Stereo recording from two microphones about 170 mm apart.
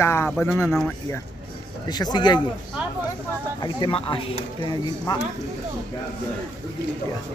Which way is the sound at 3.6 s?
30° left (ahead or behind).